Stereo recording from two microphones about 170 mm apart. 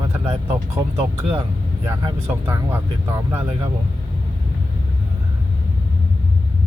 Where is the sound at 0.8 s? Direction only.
15° right (ahead or behind).